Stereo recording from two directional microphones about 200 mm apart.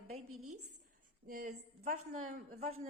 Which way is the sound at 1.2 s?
45° right (ahead or behind).